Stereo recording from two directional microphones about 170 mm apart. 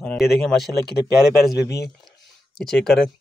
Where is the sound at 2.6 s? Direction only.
5° left (ahead or behind).